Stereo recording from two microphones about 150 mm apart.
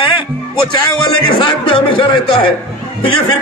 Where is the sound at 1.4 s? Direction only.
35° left (ahead or behind).